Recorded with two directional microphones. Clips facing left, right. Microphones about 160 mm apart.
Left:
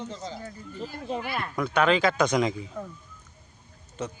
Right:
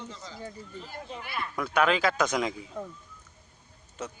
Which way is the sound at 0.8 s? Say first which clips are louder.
Left 10 dB; 55° left (ahead or behind).